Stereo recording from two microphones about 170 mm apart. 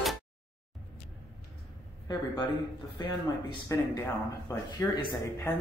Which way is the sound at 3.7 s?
20° left (ahead or behind).